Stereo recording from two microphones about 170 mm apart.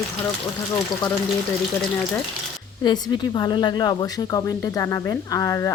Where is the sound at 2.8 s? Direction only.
25° left (ahead or behind).